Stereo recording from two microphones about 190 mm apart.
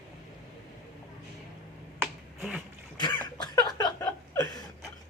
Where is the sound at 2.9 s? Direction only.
25° left (ahead or behind).